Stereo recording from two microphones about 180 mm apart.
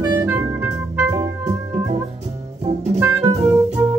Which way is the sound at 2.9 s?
15° right (ahead or behind).